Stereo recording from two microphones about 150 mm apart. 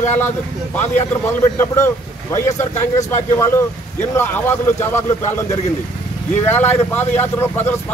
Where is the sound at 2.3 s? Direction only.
20° left (ahead or behind).